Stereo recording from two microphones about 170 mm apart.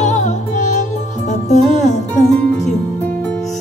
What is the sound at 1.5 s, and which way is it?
Music, 45° left (ahead or behind).